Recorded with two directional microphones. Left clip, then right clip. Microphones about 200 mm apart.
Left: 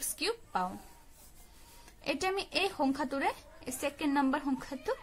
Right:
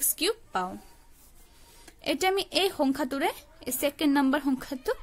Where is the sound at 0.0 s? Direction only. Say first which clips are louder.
Right 6 dB; 35° right (ahead or behind).